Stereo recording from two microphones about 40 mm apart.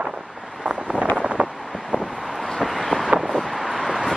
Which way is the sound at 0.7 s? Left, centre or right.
Right.